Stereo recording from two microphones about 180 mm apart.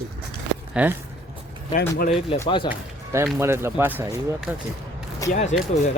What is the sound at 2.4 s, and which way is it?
Speech, 25° left (ahead or behind).